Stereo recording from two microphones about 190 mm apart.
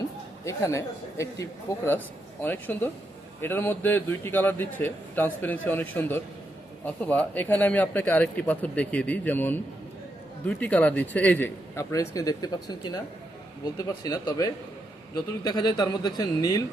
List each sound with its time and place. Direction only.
0.4 s a man's voice: 15° left (ahead or behind)